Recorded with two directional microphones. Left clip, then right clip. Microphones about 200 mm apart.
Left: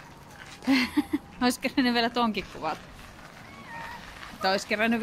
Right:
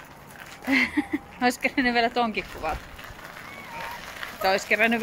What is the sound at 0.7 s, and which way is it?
Speech, 15° left (ahead or behind).